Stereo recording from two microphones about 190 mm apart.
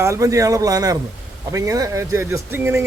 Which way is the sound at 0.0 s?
15° right (ahead or behind).